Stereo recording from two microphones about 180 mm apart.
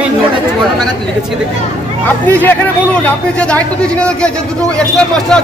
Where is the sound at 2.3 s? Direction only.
10° left (ahead or behind).